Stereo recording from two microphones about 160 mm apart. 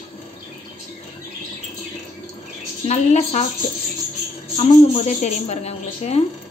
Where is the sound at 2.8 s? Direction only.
45° left (ahead or behind).